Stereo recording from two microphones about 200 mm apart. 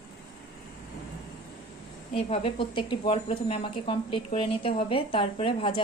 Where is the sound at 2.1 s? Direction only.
30° left (ahead or behind).